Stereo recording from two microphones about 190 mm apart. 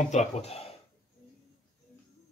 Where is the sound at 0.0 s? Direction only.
35° left (ahead or behind).